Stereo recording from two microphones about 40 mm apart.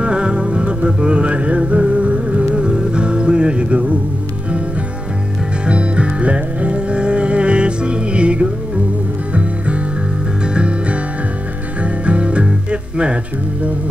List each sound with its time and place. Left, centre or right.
0.0 s music: right
5.7 s music: right